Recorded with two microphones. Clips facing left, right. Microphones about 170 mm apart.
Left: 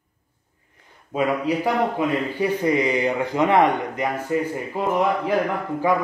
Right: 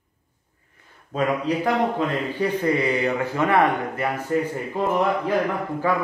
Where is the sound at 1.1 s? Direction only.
10° left (ahead or behind).